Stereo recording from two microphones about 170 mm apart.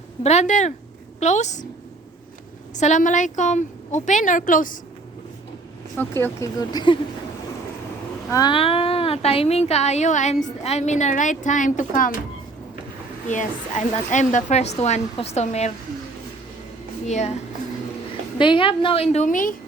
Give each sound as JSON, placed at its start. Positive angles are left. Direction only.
{"t": 0.2, "sound": "a woman's voice", "side_deg": 40}
{"t": 2.7, "sound": "a woman's voice", "side_deg": 45}
{"t": 6.0, "sound": "speech", "side_deg": 15}
{"t": 8.3, "sound": "speech", "side_deg": 25}
{"t": 13.2, "sound": "speech", "side_deg": 45}
{"t": 17.1, "sound": "a woman's voice", "side_deg": 45}
{"t": 18.3, "sound": "speech", "side_deg": 30}